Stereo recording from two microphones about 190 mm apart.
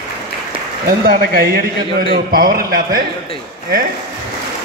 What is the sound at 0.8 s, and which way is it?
A man's voice, 55° right (ahead or behind).